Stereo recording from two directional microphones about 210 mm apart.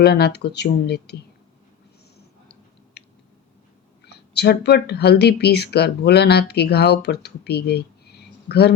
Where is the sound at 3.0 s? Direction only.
50° left (ahead or behind).